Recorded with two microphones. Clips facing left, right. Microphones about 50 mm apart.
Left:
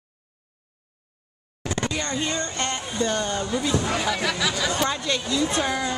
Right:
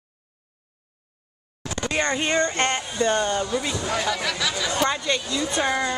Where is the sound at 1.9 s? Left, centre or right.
Right.